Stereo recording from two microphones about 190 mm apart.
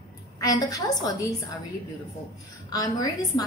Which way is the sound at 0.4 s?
20° left (ahead or behind).